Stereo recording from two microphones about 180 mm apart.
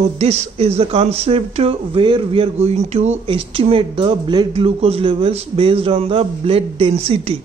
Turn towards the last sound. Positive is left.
turn(degrees=-35)  # may be behind; listen again after turning